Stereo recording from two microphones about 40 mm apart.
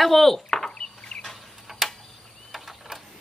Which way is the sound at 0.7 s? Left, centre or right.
Left.